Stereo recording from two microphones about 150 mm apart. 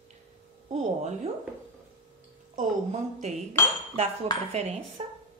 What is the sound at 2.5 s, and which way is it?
A woman's voice, 50° right (ahead or behind).